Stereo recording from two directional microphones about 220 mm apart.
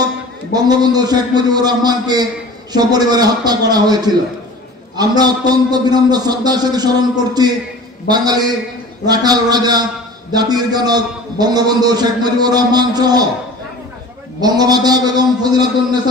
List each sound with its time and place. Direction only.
0.5 s a man's voice: 20° right (ahead or behind)
14.4 s a man's voice: 20° right (ahead or behind)